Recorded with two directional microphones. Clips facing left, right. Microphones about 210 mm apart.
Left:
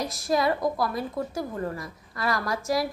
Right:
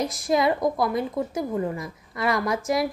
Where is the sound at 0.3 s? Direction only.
20° right (ahead or behind).